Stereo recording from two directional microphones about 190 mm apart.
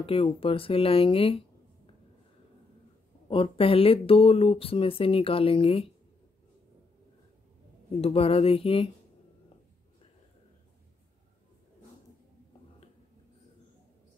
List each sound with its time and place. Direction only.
0.0 s speech: 30° left (ahead or behind)
3.3 s speech: 30° left (ahead or behind)
8.0 s a sound: 30° left (ahead or behind)